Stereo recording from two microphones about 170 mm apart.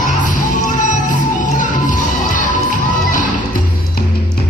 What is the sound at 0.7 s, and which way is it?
Music, 45° left (ahead or behind).